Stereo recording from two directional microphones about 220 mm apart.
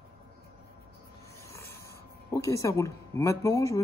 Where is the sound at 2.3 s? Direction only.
15° left (ahead or behind).